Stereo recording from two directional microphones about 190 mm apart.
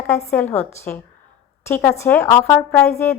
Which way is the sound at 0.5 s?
15° left (ahead or behind).